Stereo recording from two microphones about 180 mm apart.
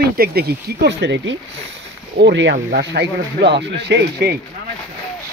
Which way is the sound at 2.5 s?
65° right (ahead or behind).